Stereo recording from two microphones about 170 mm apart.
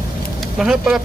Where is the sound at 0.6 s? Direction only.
5° right (ahead or behind).